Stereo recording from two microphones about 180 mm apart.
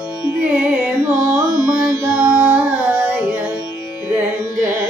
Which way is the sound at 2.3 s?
10° right (ahead or behind).